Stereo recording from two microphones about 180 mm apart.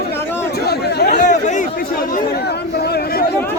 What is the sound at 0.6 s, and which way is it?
Chatter, 65° left (ahead or behind).